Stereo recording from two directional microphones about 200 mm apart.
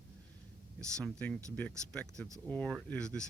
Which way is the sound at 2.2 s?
15° right (ahead or behind).